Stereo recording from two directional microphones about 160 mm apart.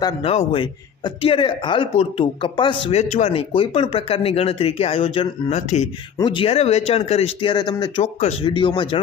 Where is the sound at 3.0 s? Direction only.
45° left (ahead or behind).